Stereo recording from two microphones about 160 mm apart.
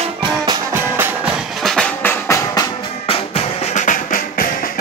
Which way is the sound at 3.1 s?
40° left (ahead or behind).